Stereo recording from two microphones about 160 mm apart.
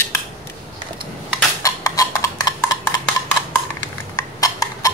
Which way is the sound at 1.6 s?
20° left (ahead or behind).